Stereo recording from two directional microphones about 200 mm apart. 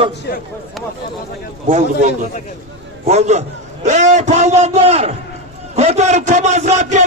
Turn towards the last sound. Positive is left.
turn(degrees=-35)  # may be behind; listen again after turning